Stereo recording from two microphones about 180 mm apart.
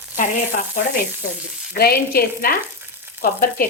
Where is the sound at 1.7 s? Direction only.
55° left (ahead or behind).